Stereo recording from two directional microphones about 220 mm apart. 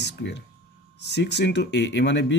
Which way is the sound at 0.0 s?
50° left (ahead or behind).